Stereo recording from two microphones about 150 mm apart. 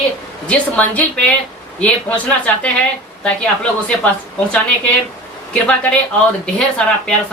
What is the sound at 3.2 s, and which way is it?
Speech, 5° left (ahead or behind).